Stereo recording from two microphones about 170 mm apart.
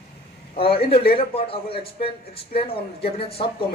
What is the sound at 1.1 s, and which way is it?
Speech, 35° left (ahead or behind).